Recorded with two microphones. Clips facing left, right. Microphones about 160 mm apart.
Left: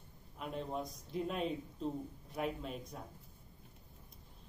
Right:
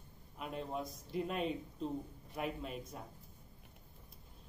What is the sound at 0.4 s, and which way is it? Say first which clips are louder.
Speech: left 1 dB; centre (ahead or behind).